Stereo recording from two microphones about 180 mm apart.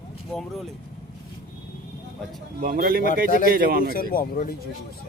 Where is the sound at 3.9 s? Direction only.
55° left (ahead or behind).